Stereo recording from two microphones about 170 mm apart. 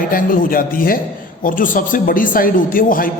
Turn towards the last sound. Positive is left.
turn(degrees=55)  # may be behind; listen again after turning